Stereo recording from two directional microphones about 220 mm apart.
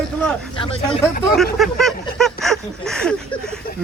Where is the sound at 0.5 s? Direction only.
25° left (ahead or behind).